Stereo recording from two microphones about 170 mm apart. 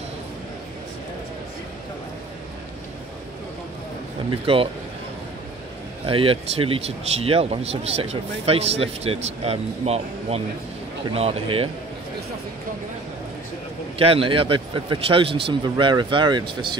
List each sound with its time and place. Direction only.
4.5 s speech: 35° right (ahead or behind)
6.0 s speech: 30° right (ahead or behind)
13.9 s speech: 35° right (ahead or behind)